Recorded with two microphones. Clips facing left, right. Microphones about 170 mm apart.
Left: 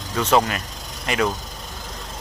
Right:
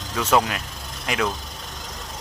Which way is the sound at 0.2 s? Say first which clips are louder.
Left 2 dB; 5° right (ahead or behind).